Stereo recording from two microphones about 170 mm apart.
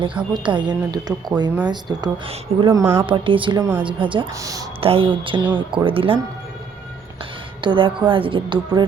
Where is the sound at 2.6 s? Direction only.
30° right (ahead or behind).